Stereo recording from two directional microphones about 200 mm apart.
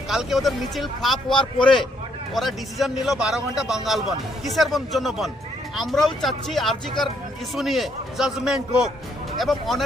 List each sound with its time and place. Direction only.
0.1 s a man's voice: centre (ahead or behind)